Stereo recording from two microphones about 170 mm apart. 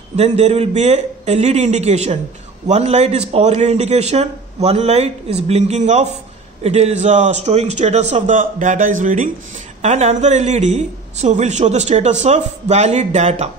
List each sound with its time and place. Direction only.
0.1 s a woman's voice: 40° right (ahead or behind)